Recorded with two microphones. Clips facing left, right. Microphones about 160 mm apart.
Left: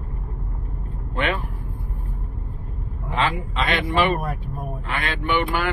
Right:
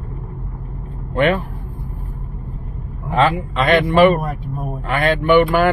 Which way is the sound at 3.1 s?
45° right (ahead or behind).